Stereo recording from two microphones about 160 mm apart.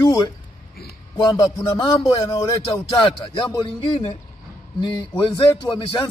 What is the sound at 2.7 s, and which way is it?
A man's voice, 30° left (ahead or behind).